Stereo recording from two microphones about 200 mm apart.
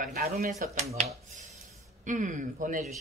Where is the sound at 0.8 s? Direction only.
30° right (ahead or behind).